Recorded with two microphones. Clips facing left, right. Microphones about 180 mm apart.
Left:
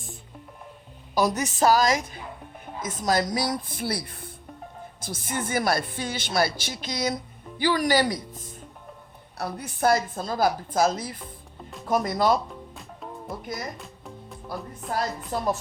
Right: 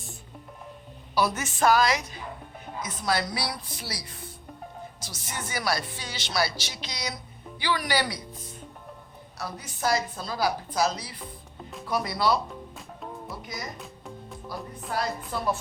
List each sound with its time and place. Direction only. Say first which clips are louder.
1.1 s speech: left 3 dB; 40° left (ahead or behind)
9.4 s speech: left 5 dB; 60° left (ahead or behind)
12.7 s music: even; centre (ahead or behind)
14.9 s speech: left 2 dB; 45° left (ahead or behind)